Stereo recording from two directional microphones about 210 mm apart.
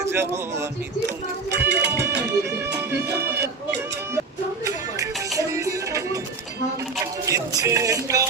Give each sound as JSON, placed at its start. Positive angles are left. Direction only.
{"t": 0.0, "sound": "music", "side_deg": -10}
{"t": 4.6, "sound": "music", "side_deg": -15}